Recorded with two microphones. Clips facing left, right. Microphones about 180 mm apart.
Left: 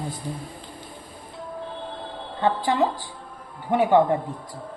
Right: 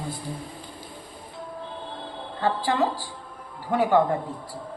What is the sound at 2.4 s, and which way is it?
Speech, 20° left (ahead or behind).